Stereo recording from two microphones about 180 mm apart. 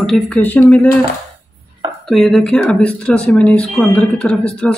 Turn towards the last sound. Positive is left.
turn(degrees=5)  # may be behind; listen again after turning